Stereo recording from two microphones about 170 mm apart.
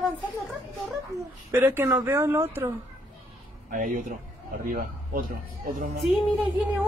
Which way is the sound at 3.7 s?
50° right (ahead or behind).